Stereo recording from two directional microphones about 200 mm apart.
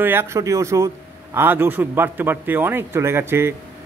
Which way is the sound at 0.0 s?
10° right (ahead or behind).